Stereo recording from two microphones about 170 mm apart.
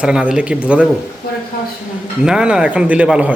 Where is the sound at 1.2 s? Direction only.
60° left (ahead or behind).